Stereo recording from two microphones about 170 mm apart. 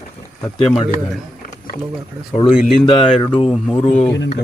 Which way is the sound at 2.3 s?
35° left (ahead or behind).